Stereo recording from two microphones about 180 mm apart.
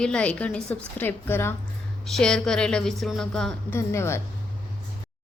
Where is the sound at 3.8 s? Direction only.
15° left (ahead or behind).